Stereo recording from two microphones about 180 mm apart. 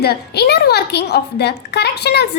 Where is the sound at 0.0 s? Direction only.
65° left (ahead or behind).